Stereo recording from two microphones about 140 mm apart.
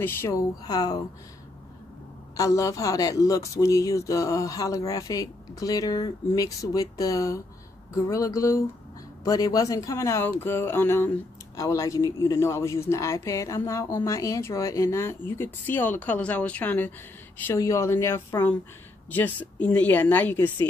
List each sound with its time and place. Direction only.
0.0 s speech: 15° left (ahead or behind)
0.7 s speech: 25° left (ahead or behind)
2.3 s speech: 25° left (ahead or behind)